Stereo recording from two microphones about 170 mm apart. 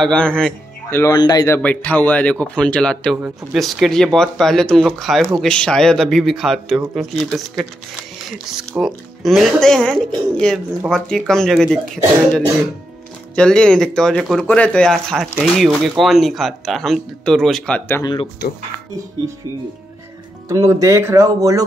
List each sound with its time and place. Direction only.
0.0 s speech: 5° left (ahead or behind)
1.1 s a man's voice: 25° left (ahead or behind)
1.6 s a man's voice: 10° left (ahead or behind)
13.4 s speech: 5° left (ahead or behind)
18.0 s speech: 30° left (ahead or behind)
20.4 s speech: 20° right (ahead or behind)